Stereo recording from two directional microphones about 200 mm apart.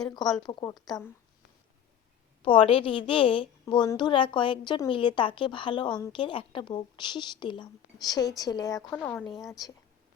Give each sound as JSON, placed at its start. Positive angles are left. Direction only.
{"t": 0.4, "sound": "a woman's voice", "side_deg": 20}
{"t": 2.4, "sound": "a woman's voice", "side_deg": 25}
{"t": 8.9, "sound": "a woman's voice", "side_deg": 5}
{"t": 9.4, "sound": "a woman's voice", "side_deg": 15}